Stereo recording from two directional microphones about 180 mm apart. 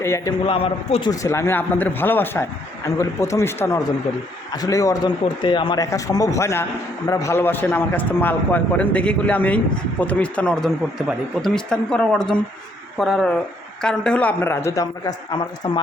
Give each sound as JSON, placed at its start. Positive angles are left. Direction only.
{"t": 0.0, "sound": "a man's voice", "side_deg": 15}
{"t": 0.4, "sound": "a man's voice", "side_deg": 30}
{"t": 1.1, "sound": "a man's voice", "side_deg": 15}